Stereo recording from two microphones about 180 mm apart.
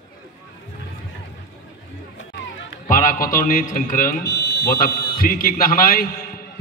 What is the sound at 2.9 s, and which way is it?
A man's voice, 50° left (ahead or behind).